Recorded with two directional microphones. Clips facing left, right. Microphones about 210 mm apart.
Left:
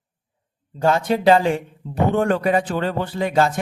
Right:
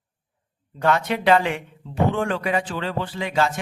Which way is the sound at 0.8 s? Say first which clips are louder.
Left 3 dB; 30° left (ahead or behind).